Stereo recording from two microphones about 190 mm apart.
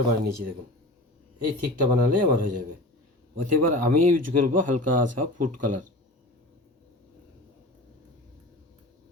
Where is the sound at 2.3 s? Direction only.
45° right (ahead or behind).